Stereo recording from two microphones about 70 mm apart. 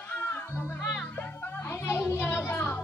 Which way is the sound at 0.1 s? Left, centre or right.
Left.